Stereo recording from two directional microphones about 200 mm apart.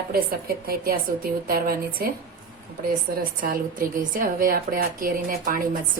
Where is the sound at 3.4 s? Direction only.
45° right (ahead or behind).